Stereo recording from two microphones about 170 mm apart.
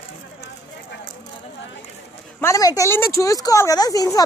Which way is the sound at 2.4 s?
20° left (ahead or behind).